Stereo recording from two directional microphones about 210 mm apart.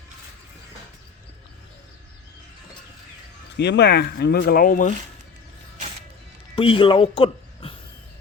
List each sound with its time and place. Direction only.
3.6 s speech: 55° left (ahead or behind)
6.6 s speech: 25° left (ahead or behind)